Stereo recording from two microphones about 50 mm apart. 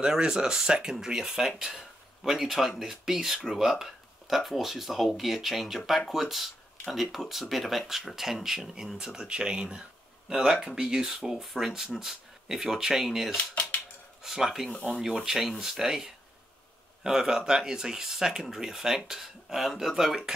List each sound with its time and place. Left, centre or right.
0.0 s speech: centre
13.4 s speech: left
14.2 s speech: centre